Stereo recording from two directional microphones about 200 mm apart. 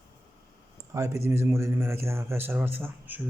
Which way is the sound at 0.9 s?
15° right (ahead or behind).